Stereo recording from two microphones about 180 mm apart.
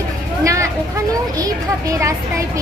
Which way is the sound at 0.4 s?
15° right (ahead or behind).